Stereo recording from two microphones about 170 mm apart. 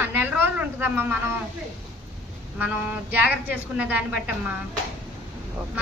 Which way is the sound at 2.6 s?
10° right (ahead or behind).